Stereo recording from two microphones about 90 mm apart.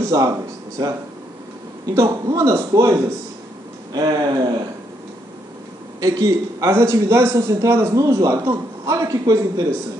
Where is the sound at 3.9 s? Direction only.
50° right (ahead or behind).